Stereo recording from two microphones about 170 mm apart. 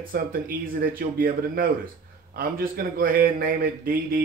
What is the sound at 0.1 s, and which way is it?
Speech, 55° right (ahead or behind).